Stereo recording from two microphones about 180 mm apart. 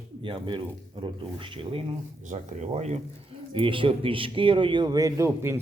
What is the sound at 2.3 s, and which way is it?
A man's voice, 40° right (ahead or behind).